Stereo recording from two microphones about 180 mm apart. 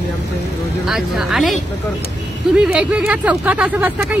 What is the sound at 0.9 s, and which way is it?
Speech, centre (ahead or behind).